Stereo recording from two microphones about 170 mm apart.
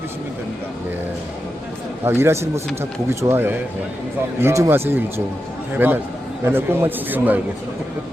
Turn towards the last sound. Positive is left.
turn(degrees=-10)  # may be behind; listen again after turning